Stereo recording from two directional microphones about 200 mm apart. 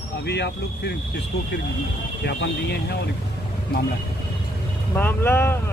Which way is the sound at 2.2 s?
55° left (ahead or behind).